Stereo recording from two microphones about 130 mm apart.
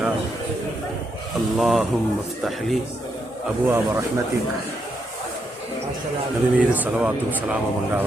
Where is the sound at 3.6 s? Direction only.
15° right (ahead or behind).